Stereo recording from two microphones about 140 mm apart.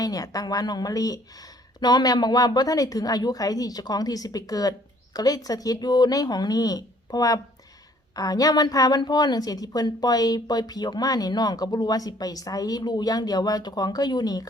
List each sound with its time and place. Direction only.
0.0 s a woman's voice: 25° left (ahead or behind)